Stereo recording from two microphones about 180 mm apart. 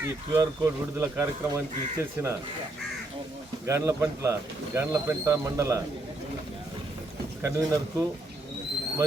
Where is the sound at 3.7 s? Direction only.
15° right (ahead or behind).